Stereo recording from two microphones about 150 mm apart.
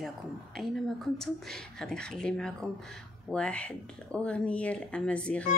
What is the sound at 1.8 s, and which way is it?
Speech, 5° left (ahead or behind).